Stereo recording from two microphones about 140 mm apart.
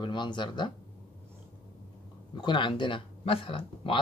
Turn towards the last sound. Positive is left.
turn(degrees=40)  # may be behind; listen again after turning